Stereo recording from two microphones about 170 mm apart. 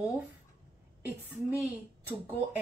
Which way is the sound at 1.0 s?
10° right (ahead or behind).